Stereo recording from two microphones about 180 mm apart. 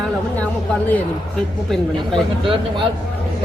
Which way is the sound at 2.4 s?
30° right (ahead or behind).